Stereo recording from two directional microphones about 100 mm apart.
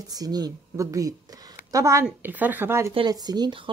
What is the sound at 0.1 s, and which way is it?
Speech, 40° right (ahead or behind).